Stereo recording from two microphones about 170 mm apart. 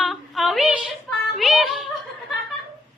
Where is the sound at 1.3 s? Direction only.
Centre (ahead or behind).